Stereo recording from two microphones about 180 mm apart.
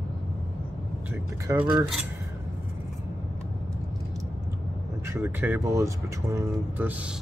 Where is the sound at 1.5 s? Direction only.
20° right (ahead or behind).